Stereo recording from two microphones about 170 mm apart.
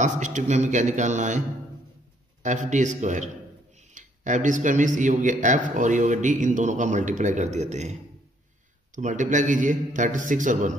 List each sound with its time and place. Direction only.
0.0 s speech: 45° right (ahead or behind)
2.4 s speech: 45° right (ahead or behind)
8.9 s speech: 50° right (ahead or behind)